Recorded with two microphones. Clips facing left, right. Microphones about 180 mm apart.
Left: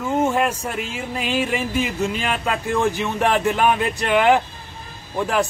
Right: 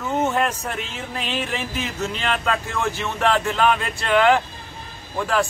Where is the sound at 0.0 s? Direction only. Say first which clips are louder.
Left 2 dB; 10° left (ahead or behind).